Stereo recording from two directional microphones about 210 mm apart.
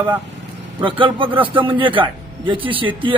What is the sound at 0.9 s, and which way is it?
Speech, 25° right (ahead or behind).